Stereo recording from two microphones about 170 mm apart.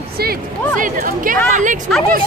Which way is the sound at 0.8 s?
55° right (ahead or behind).